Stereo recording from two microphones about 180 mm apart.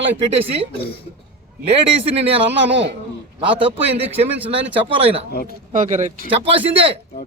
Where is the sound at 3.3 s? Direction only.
30° right (ahead or behind).